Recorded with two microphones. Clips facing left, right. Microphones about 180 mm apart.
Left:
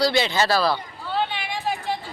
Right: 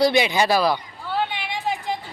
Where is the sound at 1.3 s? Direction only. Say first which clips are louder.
Right 1 dB; 20° right (ahead or behind).